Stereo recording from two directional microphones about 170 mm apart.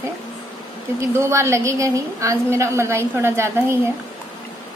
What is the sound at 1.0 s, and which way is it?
A woman's voice, 15° right (ahead or behind).